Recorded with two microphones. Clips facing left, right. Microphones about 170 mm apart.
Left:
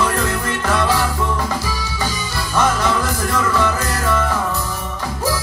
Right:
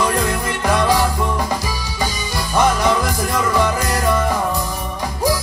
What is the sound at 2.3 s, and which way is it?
Music, 15° right (ahead or behind).